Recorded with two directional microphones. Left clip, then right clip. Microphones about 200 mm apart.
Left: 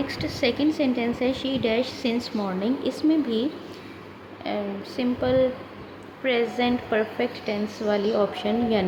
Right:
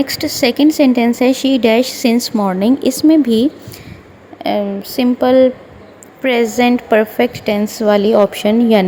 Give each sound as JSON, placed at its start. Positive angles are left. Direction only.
{"t": 0.0, "sound": "a woman's voice", "side_deg": -45}